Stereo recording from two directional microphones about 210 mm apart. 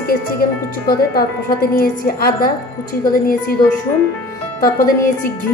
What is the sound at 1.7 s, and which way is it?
A woman's voice, 45° left (ahead or behind).